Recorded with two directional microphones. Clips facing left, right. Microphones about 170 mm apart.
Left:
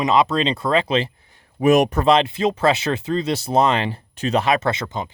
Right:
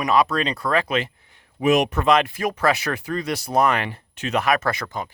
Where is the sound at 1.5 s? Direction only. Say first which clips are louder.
Left 3 dB; 45° left (ahead or behind).